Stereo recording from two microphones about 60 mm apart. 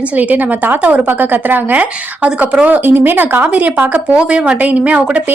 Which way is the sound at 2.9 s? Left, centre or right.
Right.